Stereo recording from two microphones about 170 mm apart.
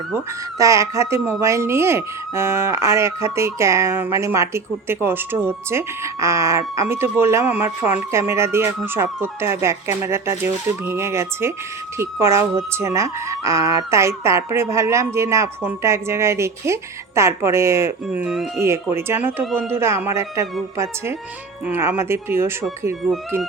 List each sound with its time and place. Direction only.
0.6 s speech: 20° right (ahead or behind)
18.5 s speech: 15° right (ahead or behind)